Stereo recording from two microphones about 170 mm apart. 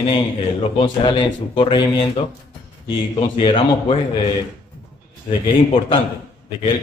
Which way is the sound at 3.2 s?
30° left (ahead or behind).